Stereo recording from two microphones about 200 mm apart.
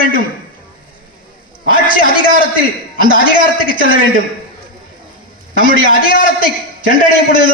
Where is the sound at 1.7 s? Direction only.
45° left (ahead or behind).